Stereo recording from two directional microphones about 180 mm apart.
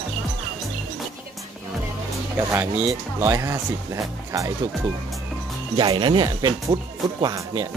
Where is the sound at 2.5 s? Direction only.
15° right (ahead or behind).